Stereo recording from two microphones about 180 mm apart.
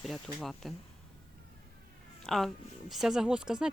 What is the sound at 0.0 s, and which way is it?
Speech, centre (ahead or behind).